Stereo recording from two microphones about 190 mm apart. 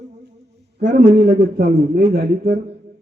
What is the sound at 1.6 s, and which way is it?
Speech, 50° right (ahead or behind).